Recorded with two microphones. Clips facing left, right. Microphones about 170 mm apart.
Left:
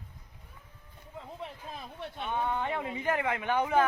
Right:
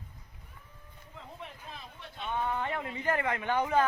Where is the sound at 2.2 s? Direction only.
15° left (ahead or behind).